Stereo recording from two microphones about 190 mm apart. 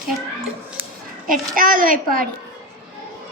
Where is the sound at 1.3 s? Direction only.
45° right (ahead or behind).